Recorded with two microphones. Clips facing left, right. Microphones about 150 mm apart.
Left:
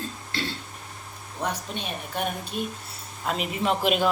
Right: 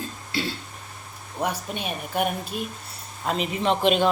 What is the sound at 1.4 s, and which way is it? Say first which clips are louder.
Speech: right 3 dB; 10° right (ahead or behind).